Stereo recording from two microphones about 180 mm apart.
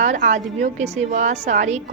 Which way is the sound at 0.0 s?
45° right (ahead or behind).